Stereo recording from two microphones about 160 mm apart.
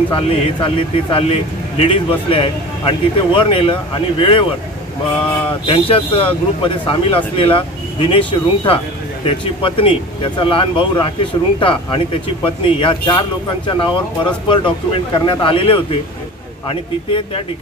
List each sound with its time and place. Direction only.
0.1 s a man's voice: 35° left (ahead or behind)
5.7 s a man's voice: 35° left (ahead or behind)